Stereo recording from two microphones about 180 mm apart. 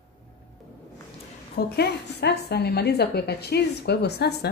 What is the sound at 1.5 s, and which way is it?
A woman's voice, 65° left (ahead or behind).